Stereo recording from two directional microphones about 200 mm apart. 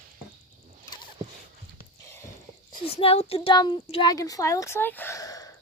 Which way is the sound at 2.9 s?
30° left (ahead or behind).